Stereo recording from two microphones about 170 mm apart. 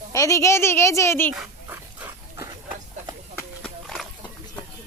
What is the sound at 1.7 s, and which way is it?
Dog, 15° right (ahead or behind).